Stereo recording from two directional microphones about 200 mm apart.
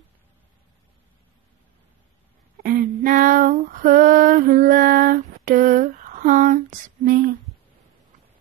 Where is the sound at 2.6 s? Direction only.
45° right (ahead or behind).